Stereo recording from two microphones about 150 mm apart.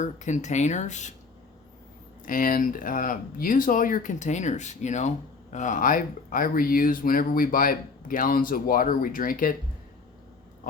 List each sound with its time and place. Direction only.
0.0 s speech: 50° left (ahead or behind)
2.2 s speech: 65° left (ahead or behind)